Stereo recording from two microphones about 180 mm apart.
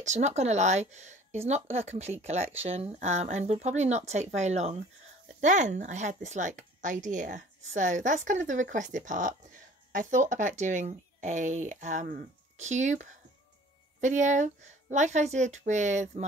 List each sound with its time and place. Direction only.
0.0 s a woman's voice: 40° right (ahead or behind)